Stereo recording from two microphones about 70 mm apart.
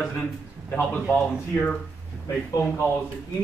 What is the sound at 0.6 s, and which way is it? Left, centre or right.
Speech, left.